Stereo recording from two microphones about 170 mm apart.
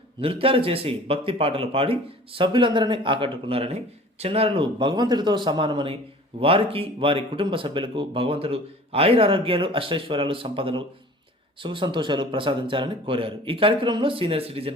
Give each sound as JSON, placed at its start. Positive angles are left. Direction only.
{"t": 0.2, "sound": "a man's voice", "side_deg": -35}